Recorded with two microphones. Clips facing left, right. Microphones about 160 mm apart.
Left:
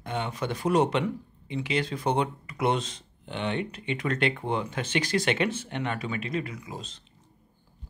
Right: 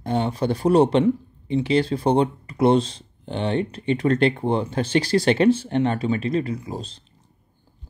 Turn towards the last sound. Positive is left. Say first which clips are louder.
# right 8 dB
turn(degrees=-35)  # may be behind; listen again after turning